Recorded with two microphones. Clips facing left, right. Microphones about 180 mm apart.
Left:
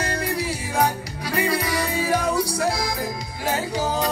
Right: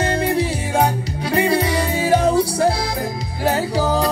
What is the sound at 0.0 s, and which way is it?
Music, 25° right (ahead or behind).